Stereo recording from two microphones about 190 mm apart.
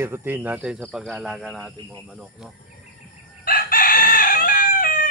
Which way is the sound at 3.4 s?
50° left (ahead or behind).